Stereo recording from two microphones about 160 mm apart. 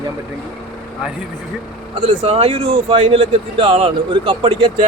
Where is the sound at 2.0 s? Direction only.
35° right (ahead or behind).